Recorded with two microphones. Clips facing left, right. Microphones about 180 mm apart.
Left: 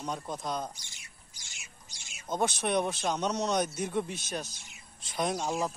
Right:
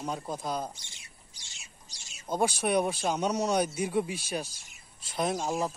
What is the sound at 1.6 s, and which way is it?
Bird, 35° right (ahead or behind).